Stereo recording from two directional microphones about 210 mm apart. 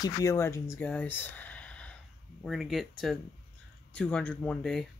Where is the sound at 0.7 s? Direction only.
5° left (ahead or behind).